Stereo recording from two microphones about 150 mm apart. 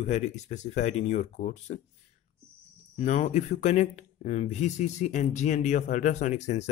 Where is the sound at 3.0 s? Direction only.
50° left (ahead or behind).